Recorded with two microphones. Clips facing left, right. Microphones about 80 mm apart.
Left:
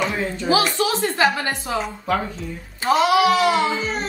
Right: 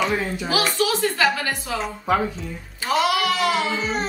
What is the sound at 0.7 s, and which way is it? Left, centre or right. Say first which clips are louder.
A woman's voice: left 1 dB; left.